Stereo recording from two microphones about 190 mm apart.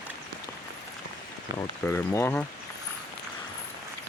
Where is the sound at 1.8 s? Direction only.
15° left (ahead or behind).